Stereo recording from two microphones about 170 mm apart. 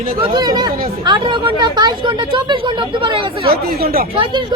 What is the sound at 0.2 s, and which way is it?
Speech, 25° right (ahead or behind).